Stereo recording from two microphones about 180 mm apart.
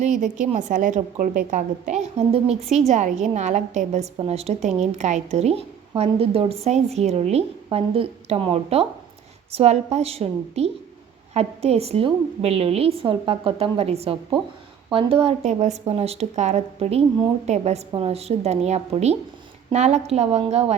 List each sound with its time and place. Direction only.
0.0 s a woman's voice: 40° right (ahead or behind)